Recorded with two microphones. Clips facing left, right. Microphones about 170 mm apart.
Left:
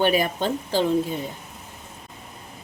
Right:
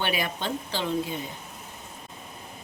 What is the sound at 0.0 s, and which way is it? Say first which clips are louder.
Speech: left 8 dB; 45° left (ahead or behind).